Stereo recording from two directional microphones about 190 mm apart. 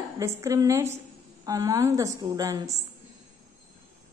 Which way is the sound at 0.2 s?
15° right (ahead or behind).